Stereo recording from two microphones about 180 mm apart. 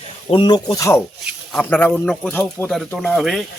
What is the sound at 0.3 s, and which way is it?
Speech, 25° left (ahead or behind).